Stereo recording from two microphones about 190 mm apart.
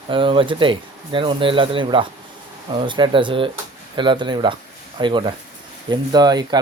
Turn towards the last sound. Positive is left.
turn(degrees=-20)  # may be behind; listen again after turning